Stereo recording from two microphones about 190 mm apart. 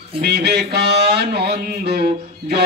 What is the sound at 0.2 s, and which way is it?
A man's voice, 60° right (ahead or behind).